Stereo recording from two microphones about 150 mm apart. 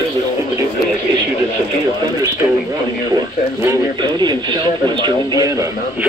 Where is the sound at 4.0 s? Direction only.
30° right (ahead or behind).